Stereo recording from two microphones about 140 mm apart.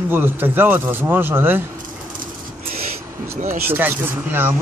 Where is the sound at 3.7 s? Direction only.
15° right (ahead or behind).